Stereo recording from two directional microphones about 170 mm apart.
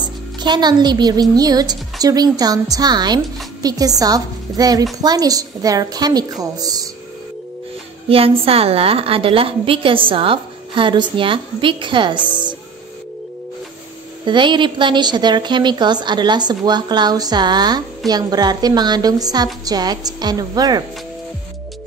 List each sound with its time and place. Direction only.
0.4 s a woman's voice: 25° right (ahead or behind)
8.1 s a woman's voice: 35° right (ahead or behind)
12.3 s a sound: 25° right (ahead or behind)
14.2 s a woman's voice: 30° right (ahead or behind)